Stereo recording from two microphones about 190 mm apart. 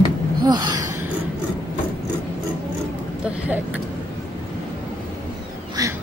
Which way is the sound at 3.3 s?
5° right (ahead or behind).